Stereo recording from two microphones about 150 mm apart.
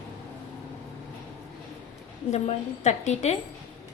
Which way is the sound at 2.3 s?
50° left (ahead or behind).